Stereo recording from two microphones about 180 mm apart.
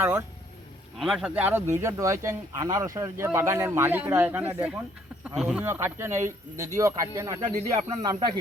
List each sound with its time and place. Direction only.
0.0 s speech: 15° right (ahead or behind)
0.9 s speech: centre (ahead or behind)
5.6 s speech: 15° right (ahead or behind)